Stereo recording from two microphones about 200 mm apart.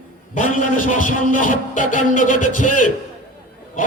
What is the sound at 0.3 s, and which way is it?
A man's voice, 40° left (ahead or behind).